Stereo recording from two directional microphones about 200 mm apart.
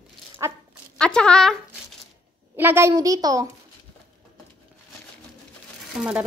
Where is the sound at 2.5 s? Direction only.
10° right (ahead or behind).